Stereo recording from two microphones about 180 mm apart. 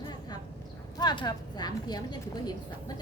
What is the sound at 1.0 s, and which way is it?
A woman's voice, 25° left (ahead or behind).